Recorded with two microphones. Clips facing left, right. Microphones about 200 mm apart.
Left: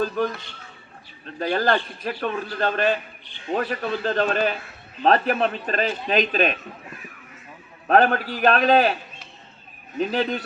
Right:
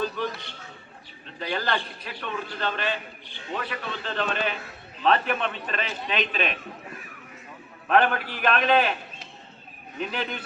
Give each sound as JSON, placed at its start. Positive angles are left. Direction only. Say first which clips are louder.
{"t": 0.0, "sound": "a man's voice", "louder": "left 5 dB", "side_deg": 45}
{"t": 1.4, "sound": "a man's voice", "louder": "left 7 dB", "side_deg": 45}
{"t": 7.9, "sound": "a man's voice", "louder": "left 4 dB", "side_deg": 40}
{"t": 10.0, "sound": "a man's voice", "louder": "left 8 dB", "side_deg": 35}